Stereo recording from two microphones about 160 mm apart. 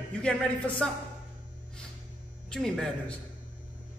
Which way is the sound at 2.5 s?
5° left (ahead or behind).